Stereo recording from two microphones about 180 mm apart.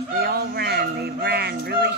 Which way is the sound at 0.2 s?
60° right (ahead or behind).